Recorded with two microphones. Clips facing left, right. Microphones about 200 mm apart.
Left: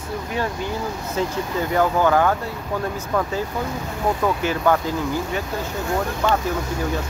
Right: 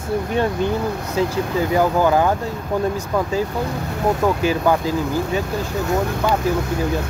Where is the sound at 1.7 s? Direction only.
15° right (ahead or behind).